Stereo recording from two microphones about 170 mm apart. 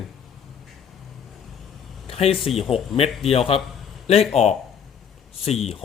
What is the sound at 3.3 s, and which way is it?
Speech, 35° left (ahead or behind).